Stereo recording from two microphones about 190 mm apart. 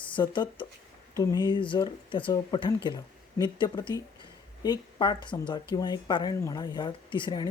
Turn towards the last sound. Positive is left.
turn(degrees=25)  # may be behind; listen again after turning